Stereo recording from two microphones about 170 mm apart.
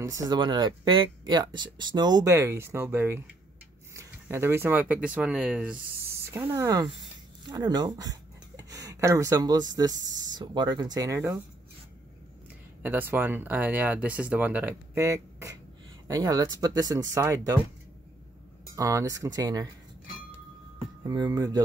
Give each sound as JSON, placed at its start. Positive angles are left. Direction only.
{"t": 0.0, "sound": "speech", "side_deg": -20}
{"t": 6.5, "sound": "speech", "side_deg": -20}
{"t": 12.8, "sound": "speech", "side_deg": -10}
{"t": 18.8, "sound": "speech", "side_deg": -20}
{"t": 21.0, "sound": "speech", "side_deg": -20}